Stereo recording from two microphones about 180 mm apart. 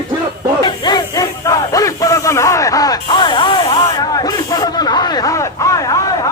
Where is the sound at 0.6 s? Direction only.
20° left (ahead or behind).